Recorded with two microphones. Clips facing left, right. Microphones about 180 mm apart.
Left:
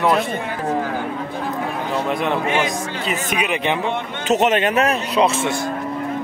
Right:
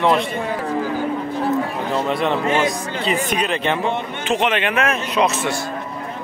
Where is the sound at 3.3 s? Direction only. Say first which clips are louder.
Even; 10° left (ahead or behind).